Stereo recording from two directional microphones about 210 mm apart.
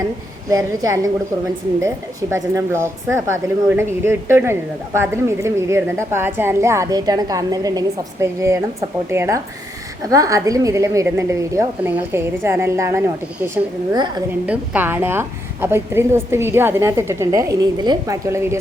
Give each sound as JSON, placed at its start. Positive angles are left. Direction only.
{"t": 0.5, "sound": "a woman's voice", "side_deg": -15}
{"t": 2.3, "sound": "a woman's voice", "side_deg": -15}